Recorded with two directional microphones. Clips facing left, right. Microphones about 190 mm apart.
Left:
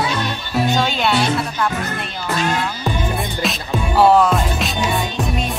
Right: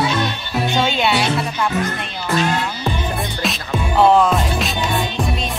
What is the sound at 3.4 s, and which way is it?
Music, centre (ahead or behind).